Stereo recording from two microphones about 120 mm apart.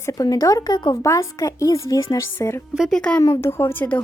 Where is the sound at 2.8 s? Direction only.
5° left (ahead or behind).